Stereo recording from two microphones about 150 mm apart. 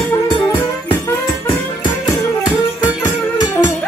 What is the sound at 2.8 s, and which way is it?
Music, 25° left (ahead or behind).